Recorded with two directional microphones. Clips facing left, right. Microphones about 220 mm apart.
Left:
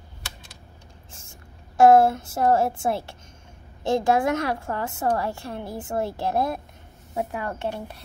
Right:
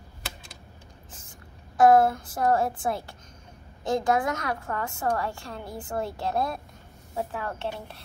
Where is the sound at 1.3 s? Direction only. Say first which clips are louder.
Even; 25° left (ahead or behind).